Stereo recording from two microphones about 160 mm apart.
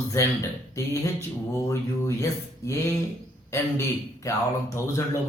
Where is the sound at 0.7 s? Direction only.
20° left (ahead or behind).